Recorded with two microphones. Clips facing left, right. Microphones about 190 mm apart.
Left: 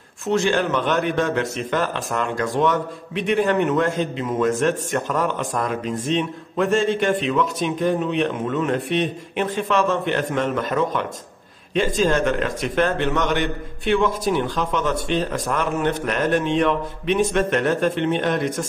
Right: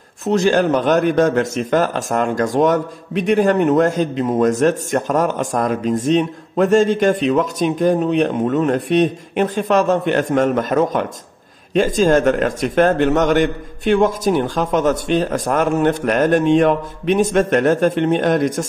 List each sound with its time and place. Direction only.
0.3 s a man's voice: 40° right (ahead or behind)